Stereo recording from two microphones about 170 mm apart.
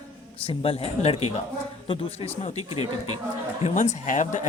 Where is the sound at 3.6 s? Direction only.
45° left (ahead or behind).